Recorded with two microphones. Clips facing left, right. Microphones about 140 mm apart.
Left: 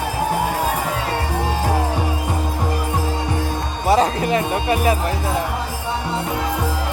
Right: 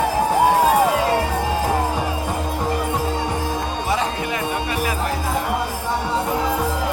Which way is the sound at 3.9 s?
40° left (ahead or behind).